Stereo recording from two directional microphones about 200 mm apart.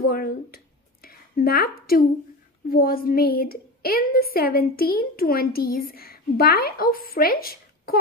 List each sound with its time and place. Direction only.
0.1 s a woman's voice: 50° left (ahead or behind)
1.0 s a sound: 50° left (ahead or behind)
2.7 s a woman's voice: 45° left (ahead or behind)